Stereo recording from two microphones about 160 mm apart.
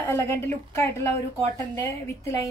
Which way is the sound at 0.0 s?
15° left (ahead or behind).